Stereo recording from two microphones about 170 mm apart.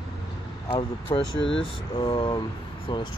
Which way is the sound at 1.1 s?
25° left (ahead or behind).